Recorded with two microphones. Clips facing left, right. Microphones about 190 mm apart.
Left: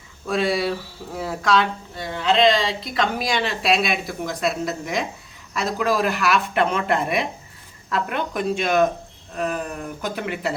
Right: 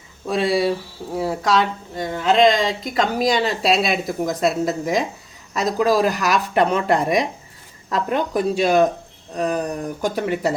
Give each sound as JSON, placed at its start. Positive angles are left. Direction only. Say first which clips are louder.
{"t": 0.3, "sound": "a woman's voice", "louder": "right 3 dB", "side_deg": -35}